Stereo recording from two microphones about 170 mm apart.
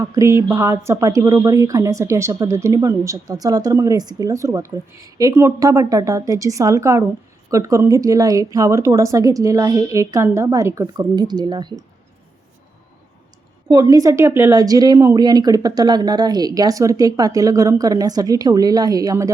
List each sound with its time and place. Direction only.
0.0 s speech: 20° right (ahead or behind)
13.7 s speech: 20° right (ahead or behind)